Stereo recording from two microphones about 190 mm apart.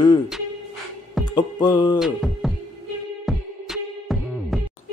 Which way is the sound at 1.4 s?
20° left (ahead or behind).